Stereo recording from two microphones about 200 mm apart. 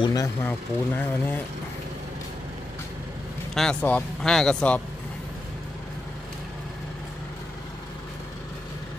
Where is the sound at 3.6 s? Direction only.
5° left (ahead or behind).